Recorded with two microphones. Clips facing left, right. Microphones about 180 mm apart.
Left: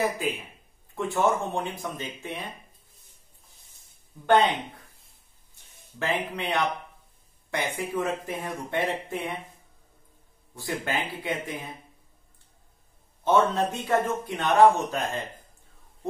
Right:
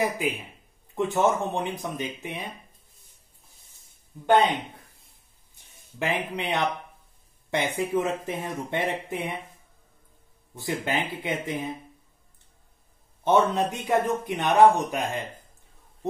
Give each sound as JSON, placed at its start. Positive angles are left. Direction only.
{"t": 0.0, "sound": "a man's voice", "side_deg": -15}
{"t": 5.9, "sound": "a man's voice", "side_deg": -15}
{"t": 10.5, "sound": "speech", "side_deg": -20}
{"t": 13.2, "sound": "a man's voice", "side_deg": -15}